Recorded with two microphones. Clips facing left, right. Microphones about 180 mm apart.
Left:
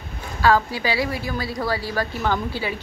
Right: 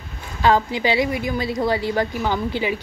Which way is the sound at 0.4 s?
20° right (ahead or behind).